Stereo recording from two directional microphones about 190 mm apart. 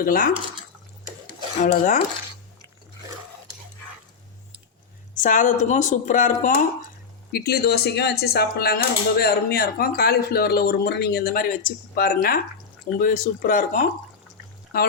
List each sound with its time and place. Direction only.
0.0 s a woman's voice: 50° left (ahead or behind)
1.6 s a woman's voice: 45° left (ahead or behind)
5.2 s a woman's voice: 45° left (ahead or behind)
7.3 s a woman's voice: 55° left (ahead or behind)